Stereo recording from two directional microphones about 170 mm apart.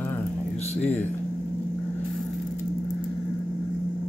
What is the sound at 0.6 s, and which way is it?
Speech, 40° left (ahead or behind).